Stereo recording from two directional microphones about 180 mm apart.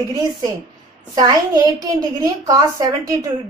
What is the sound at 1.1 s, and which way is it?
A woman's voice, 20° right (ahead or behind).